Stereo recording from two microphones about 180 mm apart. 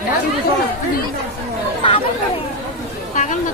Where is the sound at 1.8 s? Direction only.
30° left (ahead or behind).